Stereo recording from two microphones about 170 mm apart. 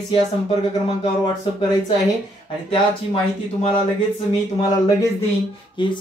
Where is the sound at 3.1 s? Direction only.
35° left (ahead or behind).